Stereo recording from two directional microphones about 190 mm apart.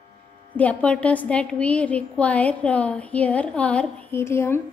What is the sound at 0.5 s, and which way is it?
A woman's voice, 5° left (ahead or behind).